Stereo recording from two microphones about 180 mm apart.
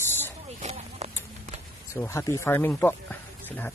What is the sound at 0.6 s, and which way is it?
Clip-clop, 40° right (ahead or behind).